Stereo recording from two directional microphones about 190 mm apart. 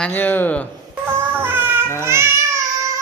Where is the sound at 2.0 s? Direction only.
15° right (ahead or behind).